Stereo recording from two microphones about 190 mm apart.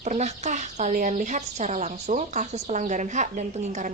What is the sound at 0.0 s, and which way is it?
Speech, 40° right (ahead or behind).